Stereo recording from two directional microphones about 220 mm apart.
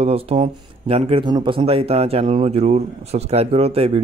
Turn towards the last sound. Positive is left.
turn(degrees=-25)  # may be behind; listen again after turning